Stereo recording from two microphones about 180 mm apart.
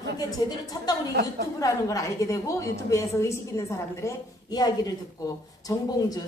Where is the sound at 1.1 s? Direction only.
60° right (ahead or behind).